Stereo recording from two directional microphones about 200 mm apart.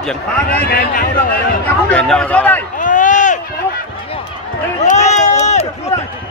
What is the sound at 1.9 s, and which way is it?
Speech, 5° left (ahead or behind).